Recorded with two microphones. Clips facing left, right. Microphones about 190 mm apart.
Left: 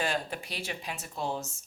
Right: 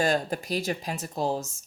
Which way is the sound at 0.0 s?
40° right (ahead or behind).